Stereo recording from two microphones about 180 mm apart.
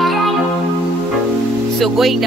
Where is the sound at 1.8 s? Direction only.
Centre (ahead or behind).